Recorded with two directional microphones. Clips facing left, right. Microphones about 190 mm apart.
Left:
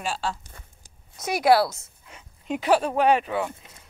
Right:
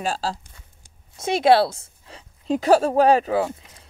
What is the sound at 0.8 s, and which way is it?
A woman's voice, 25° right (ahead or behind).